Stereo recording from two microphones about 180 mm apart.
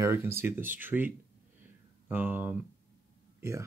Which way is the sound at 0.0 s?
15° right (ahead or behind).